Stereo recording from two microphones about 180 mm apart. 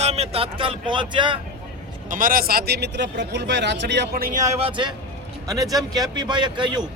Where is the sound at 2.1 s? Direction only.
50° right (ahead or behind); by 6.9 s 25° right (ahead or behind).